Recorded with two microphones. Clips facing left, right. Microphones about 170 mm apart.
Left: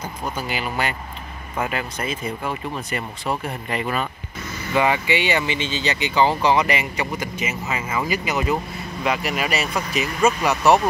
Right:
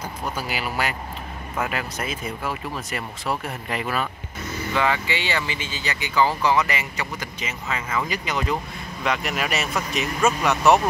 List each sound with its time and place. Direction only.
0.4 s speech: 5° right (ahead or behind)
4.7 s speech: 15° left (ahead or behind); by 10.8 s centre (ahead or behind)